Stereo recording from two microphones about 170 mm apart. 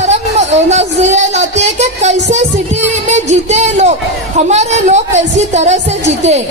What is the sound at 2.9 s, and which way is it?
Music, 40° right (ahead or behind).